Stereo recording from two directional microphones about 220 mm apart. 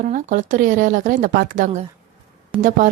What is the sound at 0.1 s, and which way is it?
Speech, 35° right (ahead or behind).